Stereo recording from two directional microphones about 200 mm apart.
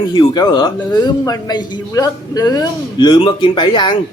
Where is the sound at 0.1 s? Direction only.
25° left (ahead or behind).